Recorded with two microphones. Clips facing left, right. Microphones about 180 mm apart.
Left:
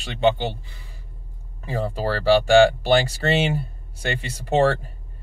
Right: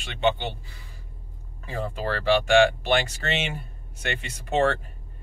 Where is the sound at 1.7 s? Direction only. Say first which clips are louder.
Left 4 dB; 35° left (ahead or behind).